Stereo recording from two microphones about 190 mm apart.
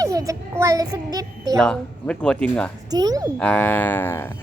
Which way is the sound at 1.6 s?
5° left (ahead or behind).